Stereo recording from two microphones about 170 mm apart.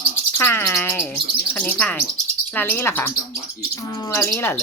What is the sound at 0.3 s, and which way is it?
Bird, 15° left (ahead or behind).